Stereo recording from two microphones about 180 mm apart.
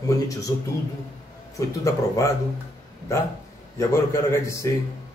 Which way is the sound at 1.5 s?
15° left (ahead or behind).